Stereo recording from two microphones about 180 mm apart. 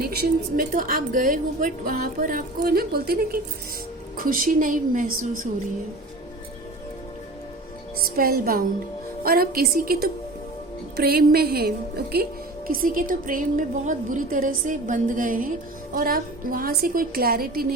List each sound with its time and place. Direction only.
0.0 s a woman's voice: 60° right (ahead or behind)
7.9 s a woman's voice: 55° right (ahead or behind)